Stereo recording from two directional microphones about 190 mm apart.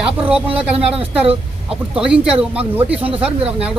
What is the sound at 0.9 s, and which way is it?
Speech, 30° right (ahead or behind).